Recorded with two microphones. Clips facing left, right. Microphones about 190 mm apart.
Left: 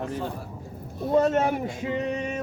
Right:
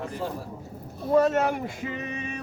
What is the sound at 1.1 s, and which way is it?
Speech, 25° left (ahead or behind).